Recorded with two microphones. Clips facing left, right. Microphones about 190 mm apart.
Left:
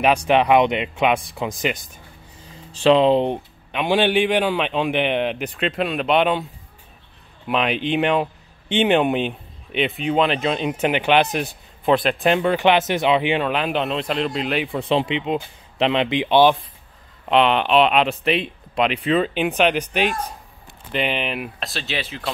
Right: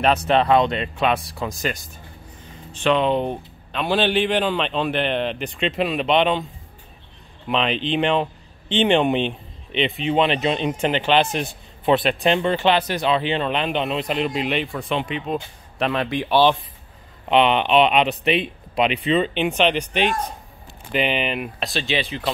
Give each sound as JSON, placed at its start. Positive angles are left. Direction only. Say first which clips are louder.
{"t": 0.3, "sound": "speech", "louder": "left 2 dB", "side_deg": 15}
{"t": 2.7, "sound": "speech", "louder": "left 4 dB", "side_deg": 30}
{"t": 3.7, "sound": "speech", "louder": "left 2 dB", "side_deg": 15}
{"t": 7.4, "sound": "speech", "louder": "left 1 dB", "side_deg": 10}
{"t": 11.8, "sound": "speech", "louder": "even", "side_deg": 0}
{"t": 14.8, "sound": "speech", "louder": "left 4 dB", "side_deg": 25}
{"t": 17.3, "sound": "speech", "louder": "even", "side_deg": 0}